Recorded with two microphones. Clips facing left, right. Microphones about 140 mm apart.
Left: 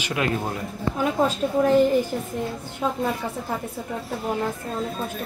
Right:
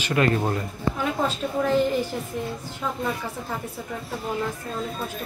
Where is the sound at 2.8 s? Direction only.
25° left (ahead or behind).